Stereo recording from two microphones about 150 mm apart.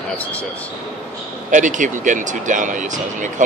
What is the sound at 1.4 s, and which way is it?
Speech, 55° right (ahead or behind).